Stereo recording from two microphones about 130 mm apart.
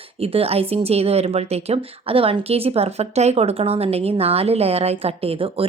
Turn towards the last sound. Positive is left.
turn(degrees=-45)  # may be behind; listen again after turning